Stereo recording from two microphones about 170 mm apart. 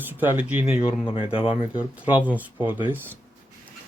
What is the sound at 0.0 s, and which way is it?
Speech, 10° right (ahead or behind).